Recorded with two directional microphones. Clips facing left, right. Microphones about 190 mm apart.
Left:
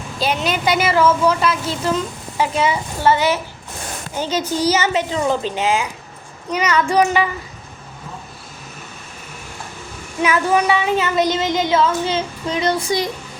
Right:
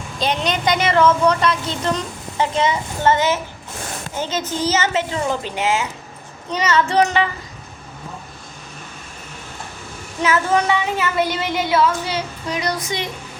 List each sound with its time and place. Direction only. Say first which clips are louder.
0.2 s a woman's voice: left 1 dB; 5° left (ahead or behind)
10.2 s speech: left 1 dB; 15° left (ahead or behind); by 13.1 s 35° left (ahead or behind)